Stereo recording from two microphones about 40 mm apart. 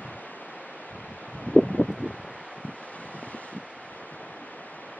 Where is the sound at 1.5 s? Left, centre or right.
Left.